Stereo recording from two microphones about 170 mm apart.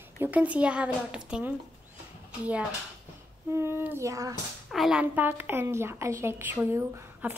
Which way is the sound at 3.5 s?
15° right (ahead or behind).